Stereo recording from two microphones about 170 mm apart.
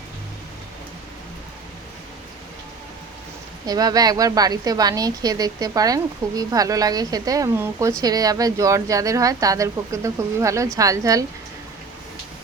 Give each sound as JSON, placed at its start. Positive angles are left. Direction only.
{"t": 3.7, "sound": "speech", "side_deg": -20}